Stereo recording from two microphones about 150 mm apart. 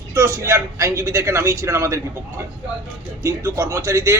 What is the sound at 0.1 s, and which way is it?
A man's voice, 20° right (ahead or behind).